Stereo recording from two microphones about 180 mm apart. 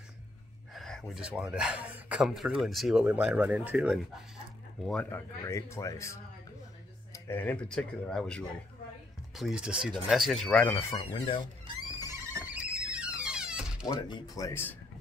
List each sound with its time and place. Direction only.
0.7 s speech: centre (ahead or behind)
4.8 s speech: 10° left (ahead or behind)
11.0 s speech: 30° left (ahead or behind)
11.6 s music: 15° right (ahead or behind)
13.8 s speech: 25° left (ahead or behind)